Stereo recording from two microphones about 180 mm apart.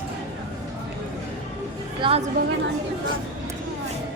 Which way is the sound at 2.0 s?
30° right (ahead or behind).